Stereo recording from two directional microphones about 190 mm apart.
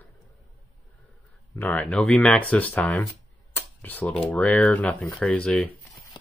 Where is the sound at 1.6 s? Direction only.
5° left (ahead or behind).